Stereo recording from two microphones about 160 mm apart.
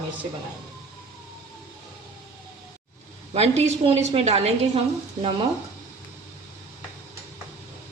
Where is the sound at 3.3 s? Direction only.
40° right (ahead or behind).